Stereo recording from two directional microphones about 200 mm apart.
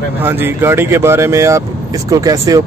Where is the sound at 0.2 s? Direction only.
10° right (ahead or behind).